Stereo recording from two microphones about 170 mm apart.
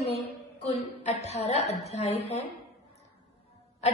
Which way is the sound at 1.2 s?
40° left (ahead or behind).